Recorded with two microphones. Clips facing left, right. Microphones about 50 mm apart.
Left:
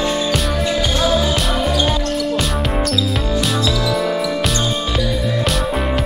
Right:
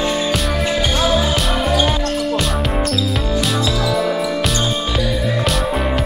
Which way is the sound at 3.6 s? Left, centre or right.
Centre.